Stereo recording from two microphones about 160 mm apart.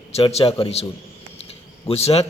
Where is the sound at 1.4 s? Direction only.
40° left (ahead or behind).